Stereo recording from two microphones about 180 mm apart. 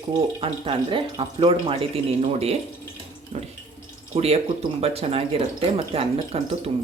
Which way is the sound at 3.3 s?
35° right (ahead or behind).